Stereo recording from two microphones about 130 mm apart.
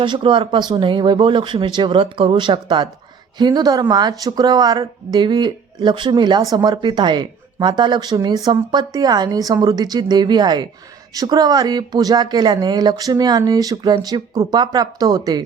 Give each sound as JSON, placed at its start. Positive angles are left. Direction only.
{"t": 0.0, "sound": "speech", "side_deg": -40}